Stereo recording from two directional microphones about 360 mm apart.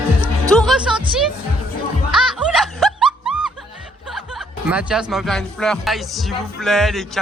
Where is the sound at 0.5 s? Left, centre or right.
Centre.